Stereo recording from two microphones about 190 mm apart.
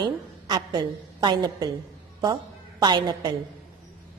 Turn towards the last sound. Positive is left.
turn(degrees=-25)  # may be behind; listen again after turning